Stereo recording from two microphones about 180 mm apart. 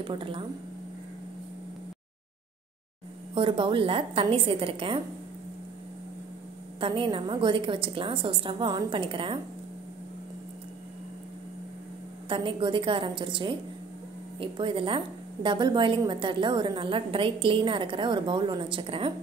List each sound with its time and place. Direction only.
0.0 s a woman's voice: 30° right (ahead or behind)
3.3 s a woman's voice: 30° right (ahead or behind)
6.8 s a woman's voice: 30° right (ahead or behind)
12.3 s a woman's voice: 30° right (ahead or behind)